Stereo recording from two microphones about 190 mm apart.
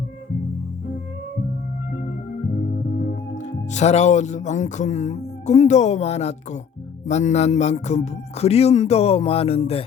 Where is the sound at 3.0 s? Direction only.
45° left (ahead or behind).